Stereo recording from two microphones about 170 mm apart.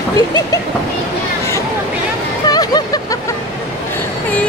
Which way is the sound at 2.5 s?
25° left (ahead or behind).